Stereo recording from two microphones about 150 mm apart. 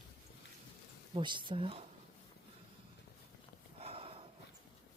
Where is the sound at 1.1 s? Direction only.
30° right (ahead or behind).